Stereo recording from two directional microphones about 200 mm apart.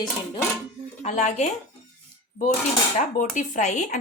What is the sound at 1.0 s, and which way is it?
Speech, 35° left (ahead or behind).